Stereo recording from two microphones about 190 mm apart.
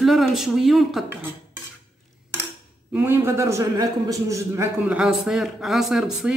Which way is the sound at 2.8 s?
10° right (ahead or behind).